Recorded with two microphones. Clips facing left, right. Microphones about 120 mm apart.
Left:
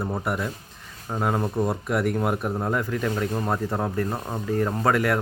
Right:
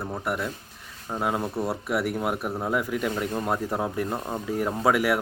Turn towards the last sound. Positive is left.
turn(degrees=-10)  # may be behind; listen again after turning